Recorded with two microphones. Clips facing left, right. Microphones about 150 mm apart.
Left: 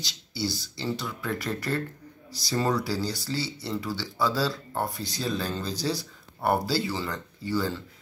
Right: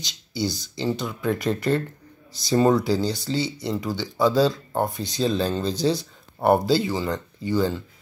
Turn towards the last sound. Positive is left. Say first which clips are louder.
# right 5 dB
turn(degrees=-20)  # may be behind; listen again after turning